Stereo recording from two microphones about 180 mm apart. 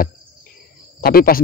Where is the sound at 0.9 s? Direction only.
55° left (ahead or behind).